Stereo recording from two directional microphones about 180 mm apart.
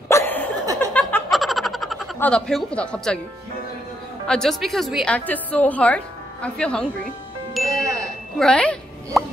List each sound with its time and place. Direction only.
0.1 s laughter: 10° left (ahead or behind)
0.9 s snicker: 5° left (ahead or behind)
2.1 s a woman's voice: 5° left (ahead or behind)
4.3 s a woman's voice: 5° left (ahead or behind)
7.6 s music: 15° right (ahead or behind)
7.9 s a sound: 5° left (ahead or behind)